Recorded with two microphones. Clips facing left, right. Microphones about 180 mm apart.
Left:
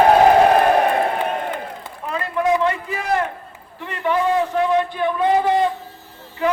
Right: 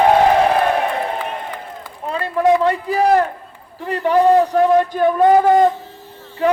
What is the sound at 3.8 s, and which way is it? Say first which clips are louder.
A man's voice: right 6 dB; 35° right (ahead or behind).